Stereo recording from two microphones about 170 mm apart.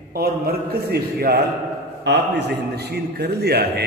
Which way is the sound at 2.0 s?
80° right.